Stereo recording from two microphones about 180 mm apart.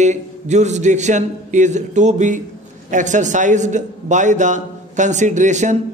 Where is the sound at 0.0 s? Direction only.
40° right (ahead or behind).